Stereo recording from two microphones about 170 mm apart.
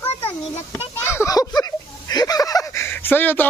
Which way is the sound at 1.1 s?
15° left (ahead or behind).